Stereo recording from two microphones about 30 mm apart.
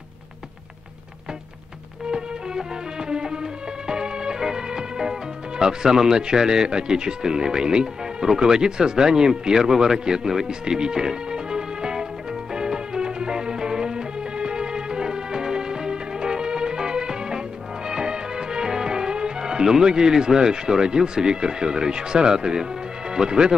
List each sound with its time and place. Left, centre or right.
2.0 s music: right
5.6 s speech: right
12.5 s music: right
17.8 s speech: right